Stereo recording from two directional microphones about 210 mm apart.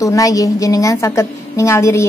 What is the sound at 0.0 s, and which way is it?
A woman's voice, 15° left (ahead or behind).